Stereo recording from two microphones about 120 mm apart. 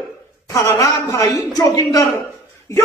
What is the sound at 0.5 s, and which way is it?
A man's voice, 30° left (ahead or behind).